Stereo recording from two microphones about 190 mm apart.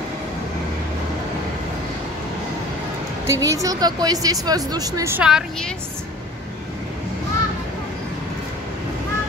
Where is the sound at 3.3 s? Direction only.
15° right (ahead or behind).